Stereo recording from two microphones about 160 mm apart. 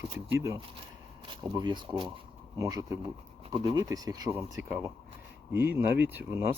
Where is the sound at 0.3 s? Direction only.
15° right (ahead or behind).